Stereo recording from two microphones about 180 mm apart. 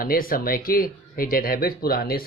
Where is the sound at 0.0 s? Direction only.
55° left (ahead or behind).